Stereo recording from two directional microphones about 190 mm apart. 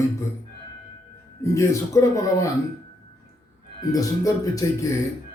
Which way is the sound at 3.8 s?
20° left (ahead or behind).